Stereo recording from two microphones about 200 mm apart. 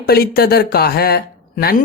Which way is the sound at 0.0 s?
50° left (ahead or behind).